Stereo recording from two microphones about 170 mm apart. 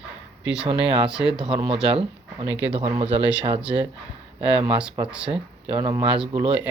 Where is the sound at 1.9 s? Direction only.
35° right (ahead or behind).